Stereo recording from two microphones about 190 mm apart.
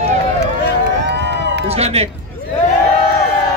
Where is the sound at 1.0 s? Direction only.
65° right (ahead or behind).